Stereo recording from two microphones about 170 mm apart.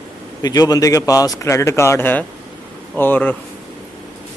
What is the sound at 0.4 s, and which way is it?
A man's voice, 20° left (ahead or behind).